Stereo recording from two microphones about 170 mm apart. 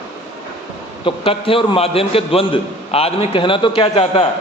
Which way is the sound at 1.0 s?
30° left (ahead or behind).